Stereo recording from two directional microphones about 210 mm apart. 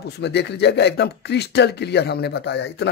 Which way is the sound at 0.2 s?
55° left (ahead or behind).